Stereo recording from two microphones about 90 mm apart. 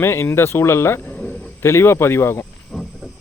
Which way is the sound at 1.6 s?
30° left (ahead or behind).